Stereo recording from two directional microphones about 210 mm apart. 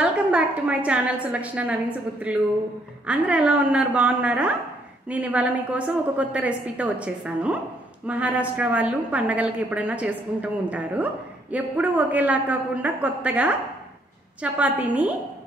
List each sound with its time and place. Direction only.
0.0 s a woman's voice: 5° right (ahead or behind)